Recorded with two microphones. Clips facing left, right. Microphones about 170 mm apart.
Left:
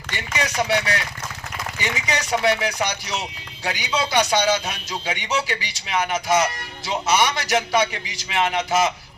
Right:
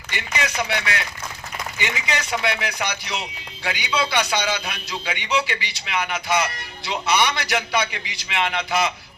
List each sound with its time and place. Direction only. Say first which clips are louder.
0.3 s speech: left 3 dB; 40° left (ahead or behind)